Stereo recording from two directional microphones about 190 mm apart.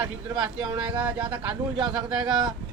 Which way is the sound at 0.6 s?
25° right (ahead or behind).